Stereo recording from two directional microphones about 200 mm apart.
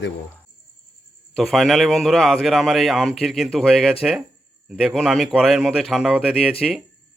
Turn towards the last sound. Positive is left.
turn(degrees=0)  # may be behind; listen again after turning